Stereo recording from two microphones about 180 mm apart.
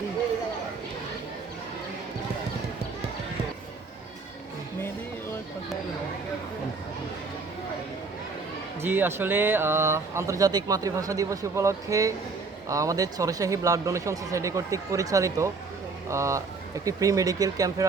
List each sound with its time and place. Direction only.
8.8 s speech: 10° right (ahead or behind)